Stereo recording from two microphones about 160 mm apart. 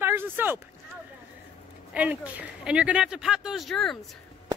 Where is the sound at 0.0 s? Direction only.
15° right (ahead or behind).